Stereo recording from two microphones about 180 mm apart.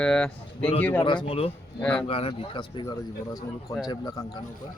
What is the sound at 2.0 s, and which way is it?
Speech, 30° left (ahead or behind).